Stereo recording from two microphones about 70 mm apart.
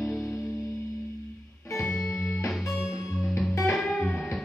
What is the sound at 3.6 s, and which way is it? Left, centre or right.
Music, centre.